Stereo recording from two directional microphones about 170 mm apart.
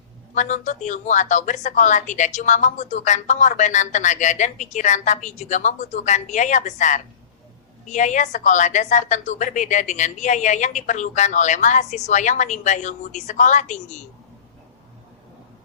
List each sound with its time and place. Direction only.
0.3 s speech: 45° left (ahead or behind)